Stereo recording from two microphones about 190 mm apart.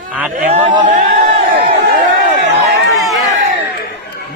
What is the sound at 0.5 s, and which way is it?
Speech, 30° right (ahead or behind).